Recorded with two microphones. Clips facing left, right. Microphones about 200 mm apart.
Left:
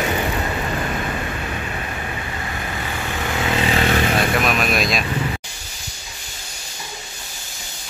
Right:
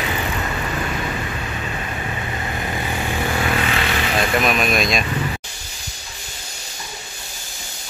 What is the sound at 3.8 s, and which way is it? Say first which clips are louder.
Vehicle: left 4 dB; 40° left (ahead or behind).